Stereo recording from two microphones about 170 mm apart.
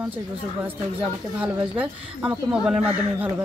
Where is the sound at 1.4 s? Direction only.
10° right (ahead or behind).